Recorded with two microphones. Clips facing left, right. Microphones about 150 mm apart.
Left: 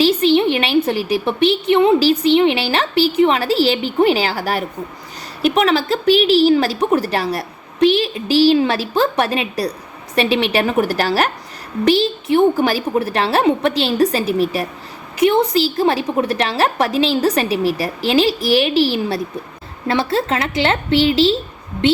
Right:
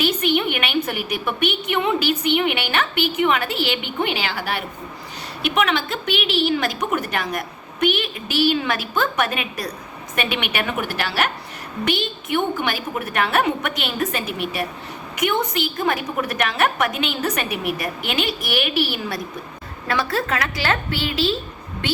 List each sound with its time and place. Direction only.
0.0 s a woman's voice: 30° left (ahead or behind)